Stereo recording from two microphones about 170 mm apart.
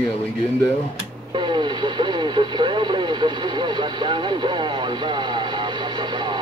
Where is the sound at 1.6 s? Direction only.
25° right (ahead or behind).